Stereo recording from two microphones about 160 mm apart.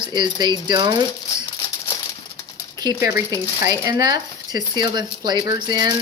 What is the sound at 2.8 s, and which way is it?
Speech, 20° right (ahead or behind).